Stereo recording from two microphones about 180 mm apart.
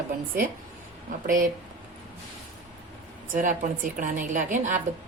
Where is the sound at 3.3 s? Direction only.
45° right (ahead or behind).